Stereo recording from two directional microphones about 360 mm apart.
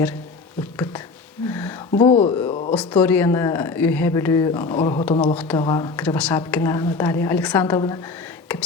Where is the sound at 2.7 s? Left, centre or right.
Centre.